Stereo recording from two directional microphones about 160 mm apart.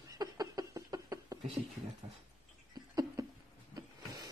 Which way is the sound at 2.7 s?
25° right (ahead or behind).